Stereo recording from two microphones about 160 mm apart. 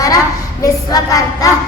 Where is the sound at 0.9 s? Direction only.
20° left (ahead or behind).